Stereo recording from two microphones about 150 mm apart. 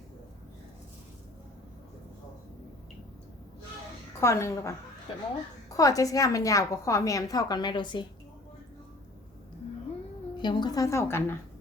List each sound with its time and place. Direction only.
4.2 s a woman's voice: 20° left (ahead or behind)
5.1 s speech: 35° left (ahead or behind)
5.7 s a woman's voice: 25° left (ahead or behind)
10.3 s a woman's voice: 30° left (ahead or behind)